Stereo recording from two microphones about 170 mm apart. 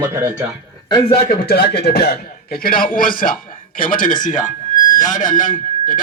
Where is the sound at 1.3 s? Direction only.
70° left (ahead or behind).